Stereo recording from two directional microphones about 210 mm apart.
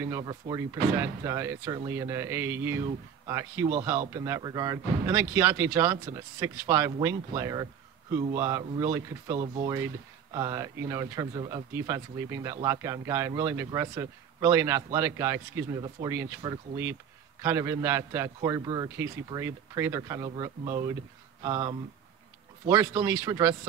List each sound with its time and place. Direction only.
0.0 s a man's voice: 15° right (ahead or behind)